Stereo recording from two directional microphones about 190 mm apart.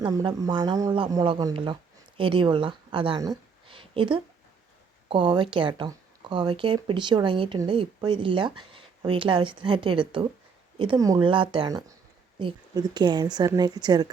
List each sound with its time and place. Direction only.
0.0 s speech: 20° right (ahead or behind)